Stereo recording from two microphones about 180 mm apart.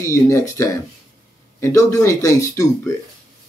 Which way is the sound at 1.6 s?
15° left (ahead or behind).